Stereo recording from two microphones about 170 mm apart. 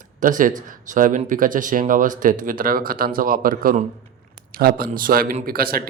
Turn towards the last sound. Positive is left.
turn(degrees=-60)  # may be behind; listen again after turning